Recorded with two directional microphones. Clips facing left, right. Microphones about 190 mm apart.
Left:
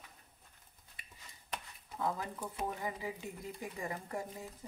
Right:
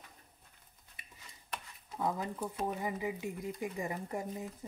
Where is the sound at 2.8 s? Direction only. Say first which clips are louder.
Right 4 dB; 15° right (ahead or behind).